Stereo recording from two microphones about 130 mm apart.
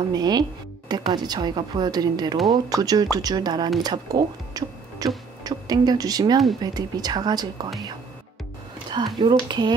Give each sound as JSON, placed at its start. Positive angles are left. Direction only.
{"t": 0.1, "sound": "speech", "side_deg": -30}
{"t": 8.9, "sound": "speech", "side_deg": -35}